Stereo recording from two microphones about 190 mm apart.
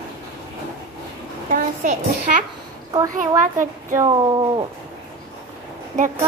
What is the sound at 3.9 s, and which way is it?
Speech, 20° right (ahead or behind).